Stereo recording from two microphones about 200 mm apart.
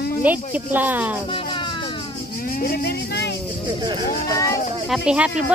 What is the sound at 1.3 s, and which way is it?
Rub, 25° left (ahead or behind).